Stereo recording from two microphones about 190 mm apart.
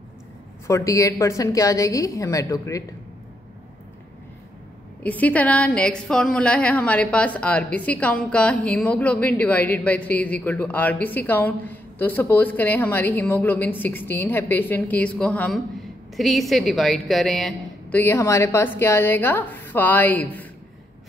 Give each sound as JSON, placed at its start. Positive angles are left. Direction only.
{"t": 0.7, "sound": "a woman's voice", "side_deg": 15}
{"t": 5.0, "sound": "a woman's voice", "side_deg": 10}